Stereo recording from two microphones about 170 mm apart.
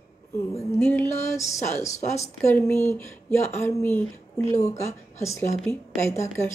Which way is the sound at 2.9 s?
15° left (ahead or behind).